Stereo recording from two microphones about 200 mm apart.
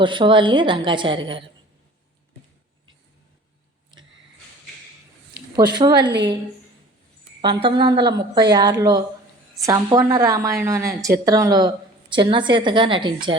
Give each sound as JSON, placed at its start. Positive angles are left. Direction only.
{"t": 0.0, "sound": "a woman's voice", "side_deg": -25}
{"t": 5.5, "sound": "a woman's voice", "side_deg": -20}
{"t": 7.4, "sound": "a woman's voice", "side_deg": -25}